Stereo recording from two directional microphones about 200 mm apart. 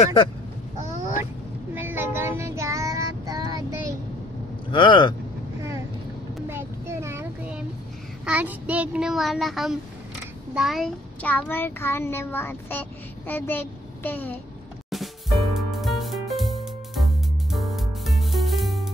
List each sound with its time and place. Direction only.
0.0 s speech: 25° left (ahead or behind)
1.7 s child singing: 10° right (ahead or behind)
4.6 s speech: 25° left (ahead or behind)
6.5 s child singing: 15° right (ahead or behind)
10.5 s a child's voice: centre (ahead or behind)
14.9 s music: centre (ahead or behind)